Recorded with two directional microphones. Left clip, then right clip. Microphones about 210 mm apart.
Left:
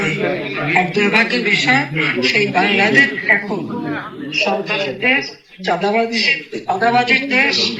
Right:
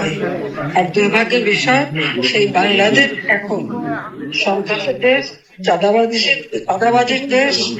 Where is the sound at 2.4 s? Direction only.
Centre (ahead or behind).